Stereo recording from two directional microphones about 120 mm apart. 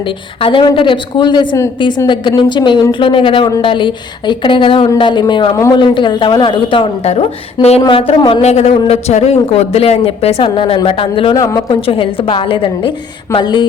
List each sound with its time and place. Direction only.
0.4 s speech: 45° left (ahead or behind)
7.1 s speech: 60° left (ahead or behind)
7.9 s speech: 50° left (ahead or behind)
8.4 s speech: 65° left (ahead or behind)
10.4 s speech: 45° left (ahead or behind)
11.3 s speech: 30° left (ahead or behind)
11.7 s speech: 45° left (ahead or behind)